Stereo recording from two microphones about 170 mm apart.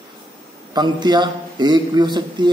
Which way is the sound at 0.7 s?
25° right (ahead or behind).